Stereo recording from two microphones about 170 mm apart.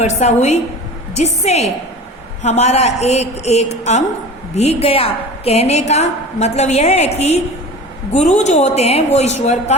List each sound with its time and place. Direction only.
0.0 s a woman's voice: 40° left (ahead or behind)